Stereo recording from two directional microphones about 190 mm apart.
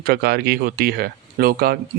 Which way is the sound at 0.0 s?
55° right (ahead or behind).